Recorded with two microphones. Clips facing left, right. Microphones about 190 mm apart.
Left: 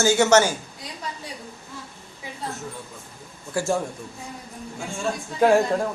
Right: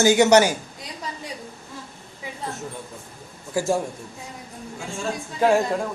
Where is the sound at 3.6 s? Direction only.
15° right (ahead or behind).